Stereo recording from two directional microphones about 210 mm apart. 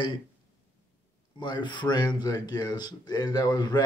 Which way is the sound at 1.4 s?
20° left (ahead or behind).